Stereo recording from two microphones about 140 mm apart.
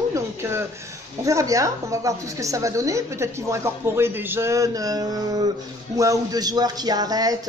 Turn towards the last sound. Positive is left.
turn(degrees=-25)  # may be behind; listen again after turning